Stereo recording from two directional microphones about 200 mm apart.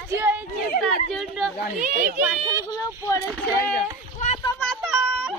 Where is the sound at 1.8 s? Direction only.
40° right (ahead or behind).